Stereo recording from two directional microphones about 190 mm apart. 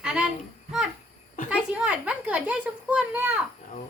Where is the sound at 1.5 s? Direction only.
5° right (ahead or behind).